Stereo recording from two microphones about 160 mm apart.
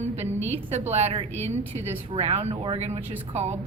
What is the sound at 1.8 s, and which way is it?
A woman's voice, 40° right (ahead or behind).